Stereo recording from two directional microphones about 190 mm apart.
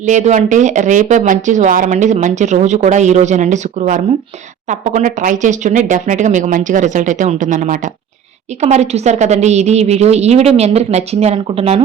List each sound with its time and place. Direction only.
0.0 s speech: 40° right (ahead or behind)